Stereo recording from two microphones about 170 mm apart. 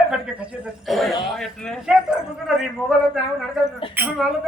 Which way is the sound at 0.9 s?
Centre (ahead or behind).